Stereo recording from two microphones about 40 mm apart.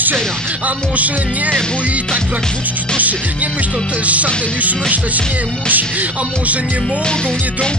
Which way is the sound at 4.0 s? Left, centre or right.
Right.